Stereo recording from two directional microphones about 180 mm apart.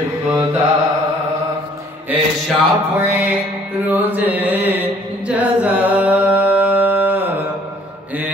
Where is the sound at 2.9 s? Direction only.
10° right (ahead or behind).